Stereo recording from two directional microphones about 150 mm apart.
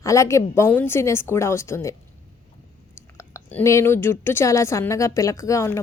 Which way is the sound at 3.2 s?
15° left (ahead or behind).